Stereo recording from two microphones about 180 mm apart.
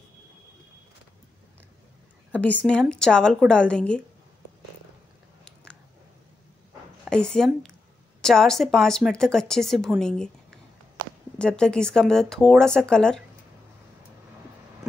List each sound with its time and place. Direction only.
2.3 s speech: 10° left (ahead or behind)
7.1 s speech: 5° left (ahead or behind)
11.3 s speech: 5° left (ahead or behind)